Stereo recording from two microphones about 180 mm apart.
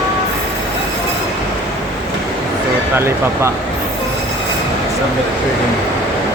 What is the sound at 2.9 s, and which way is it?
Speech, 15° right (ahead or behind).